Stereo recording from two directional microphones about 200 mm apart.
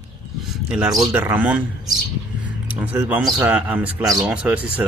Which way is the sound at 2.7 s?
5° right (ahead or behind).